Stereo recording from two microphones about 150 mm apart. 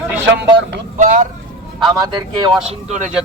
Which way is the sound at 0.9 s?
55° right (ahead or behind).